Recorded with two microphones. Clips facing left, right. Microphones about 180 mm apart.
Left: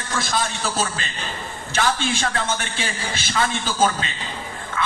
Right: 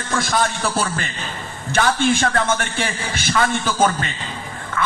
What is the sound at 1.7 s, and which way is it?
A man's voice, 55° right (ahead or behind).